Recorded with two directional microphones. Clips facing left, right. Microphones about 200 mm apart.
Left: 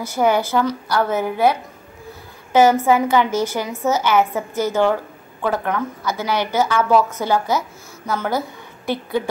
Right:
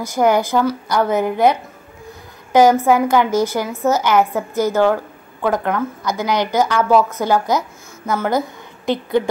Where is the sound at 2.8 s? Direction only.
10° right (ahead or behind).